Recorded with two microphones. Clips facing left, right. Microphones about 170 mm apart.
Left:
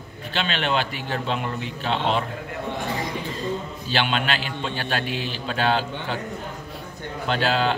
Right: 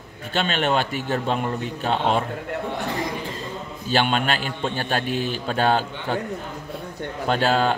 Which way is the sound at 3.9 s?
45° right (ahead or behind).